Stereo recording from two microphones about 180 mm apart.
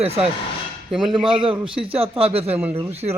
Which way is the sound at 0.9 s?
Centre (ahead or behind).